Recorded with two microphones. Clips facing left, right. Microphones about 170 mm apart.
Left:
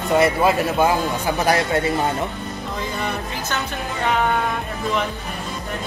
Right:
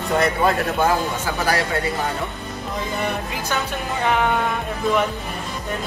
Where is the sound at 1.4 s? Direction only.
20° left (ahead or behind).